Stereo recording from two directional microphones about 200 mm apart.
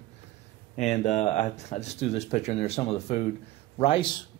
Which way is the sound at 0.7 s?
35° left (ahead or behind).